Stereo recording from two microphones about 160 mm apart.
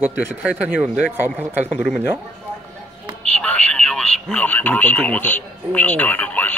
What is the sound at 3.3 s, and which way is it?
Speech, 5° left (ahead or behind).